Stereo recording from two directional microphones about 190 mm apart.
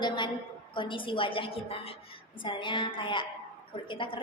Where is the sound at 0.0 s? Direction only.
25° left (ahead or behind).